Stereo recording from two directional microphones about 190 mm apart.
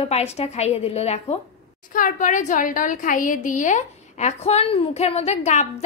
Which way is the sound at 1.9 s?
45° left (ahead or behind).